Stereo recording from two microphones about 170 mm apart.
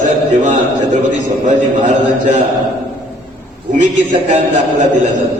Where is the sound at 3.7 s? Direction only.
45° right (ahead or behind).